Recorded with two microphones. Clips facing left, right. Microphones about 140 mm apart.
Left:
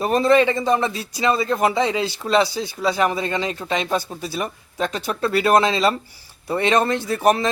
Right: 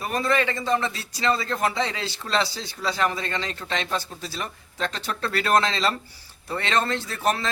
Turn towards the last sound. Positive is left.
turn(degrees=15)  # may be behind; listen again after turning